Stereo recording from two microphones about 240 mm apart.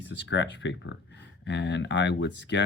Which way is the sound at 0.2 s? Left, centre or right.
Left.